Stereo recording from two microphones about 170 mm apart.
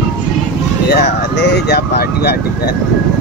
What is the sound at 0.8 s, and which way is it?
Speech, 75° left (ahead or behind).